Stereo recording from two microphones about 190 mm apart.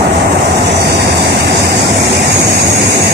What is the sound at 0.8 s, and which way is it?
Vehicle, 60° right (ahead or behind).